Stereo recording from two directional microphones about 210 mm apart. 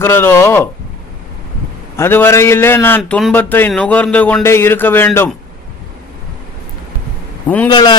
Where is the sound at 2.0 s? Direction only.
10° left (ahead or behind).